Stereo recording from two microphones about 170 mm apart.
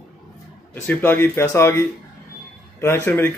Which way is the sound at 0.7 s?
10° left (ahead or behind).